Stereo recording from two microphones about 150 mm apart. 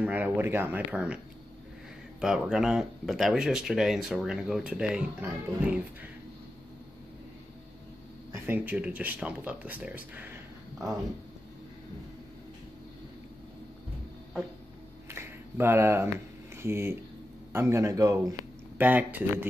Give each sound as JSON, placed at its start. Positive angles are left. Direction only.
{"t": 0.0, "sound": "speech", "side_deg": -10}
{"t": 8.3, "sound": "speech", "side_deg": -15}
{"t": 15.0, "sound": "a sound", "side_deg": -15}
{"t": 16.5, "sound": "speech", "side_deg": -15}
{"t": 18.8, "sound": "speech", "side_deg": -10}